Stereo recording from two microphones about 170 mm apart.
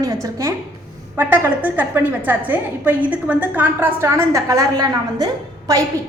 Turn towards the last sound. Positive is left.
turn(degrees=-20)  # may be behind; listen again after turning